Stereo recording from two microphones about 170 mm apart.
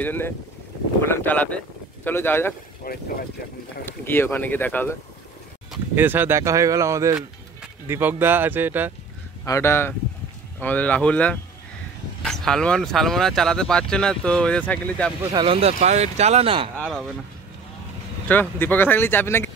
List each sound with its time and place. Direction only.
0.0 s speech: 10° left (ahead or behind)
2.8 s speech: 60° left (ahead or behind)
3.8 s speech: 10° left (ahead or behind)
5.7 s speech: 10° right (ahead or behind)
9.4 s speech: 15° left (ahead or behind)
15.3 s speech: 30° right (ahead or behind)
18.3 s speech: 10° left (ahead or behind)